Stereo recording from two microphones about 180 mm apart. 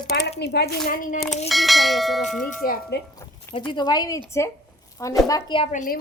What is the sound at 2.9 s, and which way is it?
Speech, 65° left (ahead or behind).